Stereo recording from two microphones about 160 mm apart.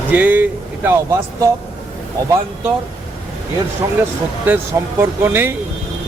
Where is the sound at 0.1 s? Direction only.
10° right (ahead or behind).